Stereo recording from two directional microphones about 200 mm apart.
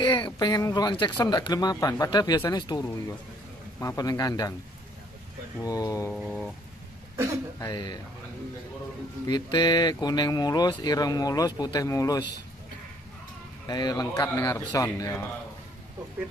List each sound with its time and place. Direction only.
0.2 s speech: 15° left (ahead or behind)
5.6 s speech: 15° left (ahead or behind)
6.1 s a sound: centre (ahead or behind)
7.5 s speech: 15° left (ahead or behind)
9.3 s speech: 20° left (ahead or behind)
13.7 s speech: 20° left (ahead or behind)